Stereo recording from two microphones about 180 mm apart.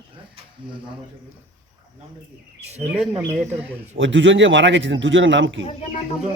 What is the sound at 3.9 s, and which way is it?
Speech, 90° right.